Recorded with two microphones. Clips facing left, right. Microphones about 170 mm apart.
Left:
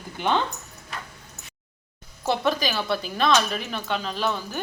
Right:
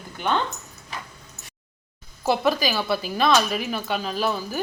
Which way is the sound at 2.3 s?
5° right (ahead or behind).